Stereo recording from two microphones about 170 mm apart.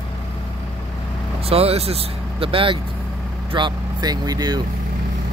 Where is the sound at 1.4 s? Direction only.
35° right (ahead or behind).